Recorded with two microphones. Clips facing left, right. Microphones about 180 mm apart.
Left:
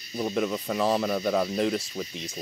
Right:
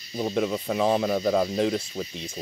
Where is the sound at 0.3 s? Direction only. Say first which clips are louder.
Right 2 dB; centre (ahead or behind).